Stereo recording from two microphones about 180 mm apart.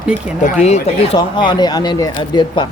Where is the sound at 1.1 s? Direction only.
25° left (ahead or behind).